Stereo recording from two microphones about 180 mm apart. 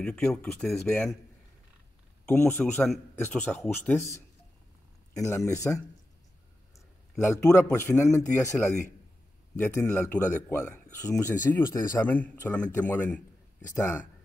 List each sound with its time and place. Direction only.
0.0 s speech: 5° left (ahead or behind)
2.2 s speech: 10° left (ahead or behind)
7.2 s speech: 15° left (ahead or behind)